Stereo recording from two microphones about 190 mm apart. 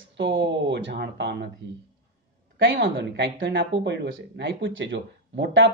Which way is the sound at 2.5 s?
70° right (ahead or behind).